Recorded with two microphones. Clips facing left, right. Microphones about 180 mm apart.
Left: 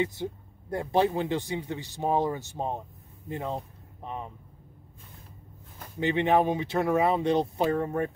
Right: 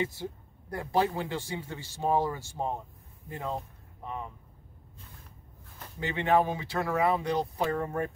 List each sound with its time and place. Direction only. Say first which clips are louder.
0.0 s speech: left 3 dB; 20° left (ahead or behind)
5.9 s speech: left 3 dB; 20° left (ahead or behind)